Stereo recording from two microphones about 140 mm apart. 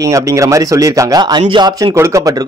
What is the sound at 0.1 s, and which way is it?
A man's voice, 25° right (ahead or behind).